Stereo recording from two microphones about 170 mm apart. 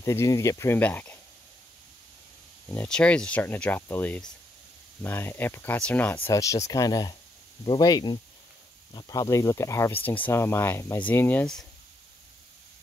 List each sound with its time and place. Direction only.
0.0 s speech: 15° left (ahead or behind)
2.7 s speech: 10° left (ahead or behind)
6.2 s speech: 20° left (ahead or behind)